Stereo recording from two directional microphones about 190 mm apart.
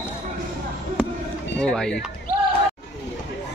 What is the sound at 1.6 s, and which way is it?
Speech, 5° left (ahead or behind).